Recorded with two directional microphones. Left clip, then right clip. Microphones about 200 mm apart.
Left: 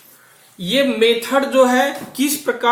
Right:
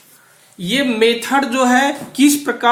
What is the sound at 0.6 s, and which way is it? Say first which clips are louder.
Speech: even; 45° right (ahead or behind).